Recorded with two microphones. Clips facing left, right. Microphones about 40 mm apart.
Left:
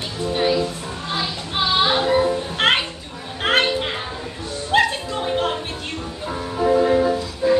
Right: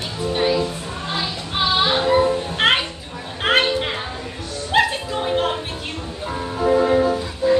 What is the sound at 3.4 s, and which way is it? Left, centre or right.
Children playing, centre.